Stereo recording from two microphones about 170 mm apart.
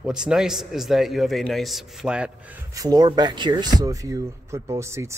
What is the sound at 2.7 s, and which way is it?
Speech, 20° right (ahead or behind).